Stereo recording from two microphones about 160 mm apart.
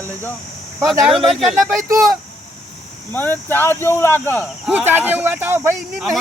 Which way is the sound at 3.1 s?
15° left (ahead or behind).